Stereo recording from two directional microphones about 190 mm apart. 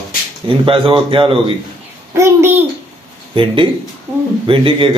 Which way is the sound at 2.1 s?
15° right (ahead or behind).